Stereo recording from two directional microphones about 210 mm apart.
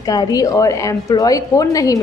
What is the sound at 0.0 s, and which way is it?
A woman's voice, 20° left (ahead or behind).